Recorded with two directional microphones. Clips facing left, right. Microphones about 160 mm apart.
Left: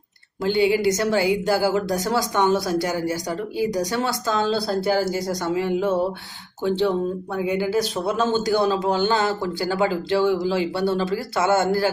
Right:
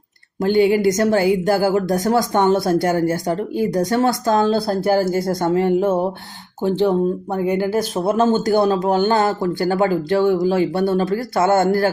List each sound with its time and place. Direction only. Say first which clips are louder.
0.4 s a woman's voice: right 4 dB; 45° right (ahead or behind)
7.3 s a woman's voice: right 2 dB; 50° right (ahead or behind)